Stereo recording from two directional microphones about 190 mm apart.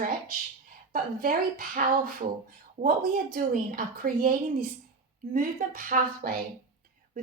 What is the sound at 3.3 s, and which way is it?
A woman's voice, 45° right (ahead or behind).